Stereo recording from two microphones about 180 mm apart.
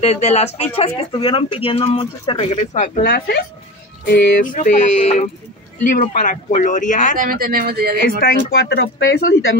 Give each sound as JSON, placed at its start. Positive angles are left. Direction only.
{"t": 0.0, "sound": "speech", "side_deg": 35}
{"t": 3.0, "sound": "speech", "side_deg": 60}
{"t": 4.1, "sound": "speech", "side_deg": 50}
{"t": 7.2, "sound": "speech", "side_deg": -55}
{"t": 8.2, "sound": "speech", "side_deg": 60}